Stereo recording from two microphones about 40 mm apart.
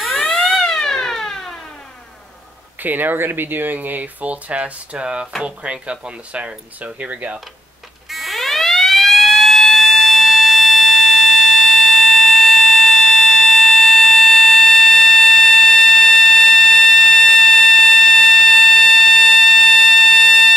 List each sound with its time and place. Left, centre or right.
0.2 s fire alarm: centre
0.7 s a sound: centre
2.8 s speech: right
8.1 s siren: centre